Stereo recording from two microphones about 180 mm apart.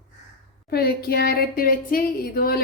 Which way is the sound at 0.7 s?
60° left (ahead or behind).